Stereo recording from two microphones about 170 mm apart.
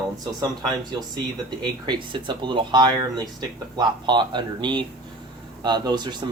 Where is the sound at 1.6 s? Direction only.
25° right (ahead or behind).